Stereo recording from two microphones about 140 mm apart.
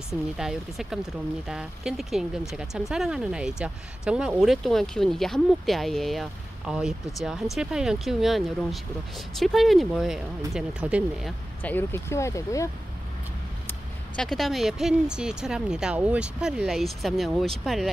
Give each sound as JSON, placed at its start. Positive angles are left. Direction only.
{"t": 0.4, "sound": "speech", "side_deg": -5}
{"t": 11.6, "sound": "speech", "side_deg": 15}
{"t": 13.7, "sound": "speech", "side_deg": 5}